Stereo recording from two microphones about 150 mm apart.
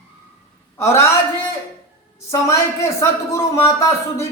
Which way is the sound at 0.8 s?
15° left (ahead or behind).